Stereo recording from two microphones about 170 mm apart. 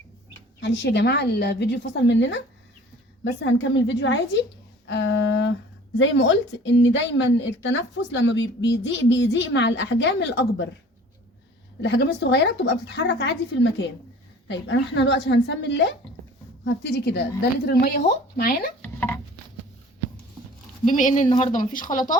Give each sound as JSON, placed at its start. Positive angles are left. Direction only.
{"t": 0.6, "sound": "speech", "side_deg": 90}
{"t": 3.4, "sound": "speech", "side_deg": 90}
{"t": 11.8, "sound": "speech", "side_deg": 85}
{"t": 18.8, "sound": "a sound", "side_deg": 10}
{"t": 20.8, "sound": "speech", "side_deg": 45}
{"t": 21.6, "sound": "speech", "side_deg": 50}